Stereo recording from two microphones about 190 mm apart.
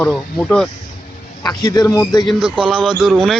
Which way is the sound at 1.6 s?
20° left (ahead or behind).